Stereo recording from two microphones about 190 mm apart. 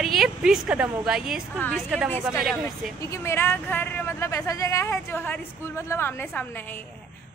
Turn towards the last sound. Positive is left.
turn(degrees=10)  # may be behind; listen again after turning